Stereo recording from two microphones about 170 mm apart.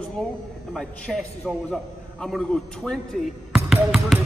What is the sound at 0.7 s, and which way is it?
A man's voice, 5° left (ahead or behind).